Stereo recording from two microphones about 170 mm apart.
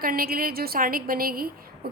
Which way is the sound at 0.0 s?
60° right (ahead or behind).